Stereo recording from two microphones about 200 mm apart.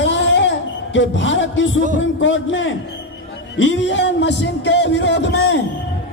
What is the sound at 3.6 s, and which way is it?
Music, 65° left (ahead or behind).